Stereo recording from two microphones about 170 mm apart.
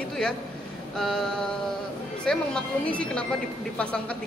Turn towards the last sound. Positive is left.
turn(degrees=5)  # may be behind; listen again after turning